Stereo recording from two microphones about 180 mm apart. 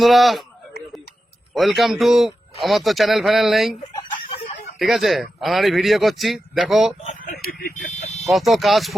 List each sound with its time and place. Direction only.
0.0 s a man's voice: centre (ahead or behind)
1.5 s a man's voice: centre (ahead or behind)
4.3 s a sound: 30° left (ahead or behind)
4.8 s a man's voice: centre (ahead or behind)
7.0 s vehicle: 45° left (ahead or behind)
7.9 s a sound: 35° left (ahead or behind)
8.2 s a man's voice: centre (ahead or behind)